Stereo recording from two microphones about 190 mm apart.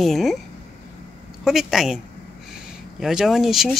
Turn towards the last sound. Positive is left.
turn(degrees=0)  # may be behind; listen again after turning